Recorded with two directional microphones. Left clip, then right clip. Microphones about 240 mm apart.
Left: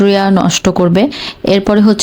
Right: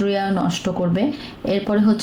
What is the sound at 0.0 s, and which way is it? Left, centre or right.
Speech, left.